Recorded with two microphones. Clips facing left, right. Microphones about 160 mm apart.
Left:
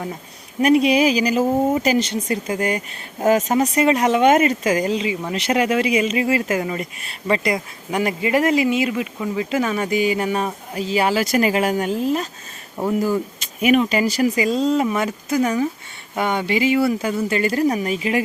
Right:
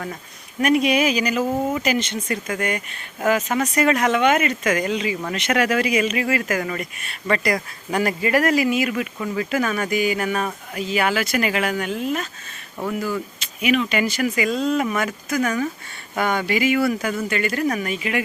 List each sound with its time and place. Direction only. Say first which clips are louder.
0.6 s speech: left 3 dB; 30° left (ahead or behind)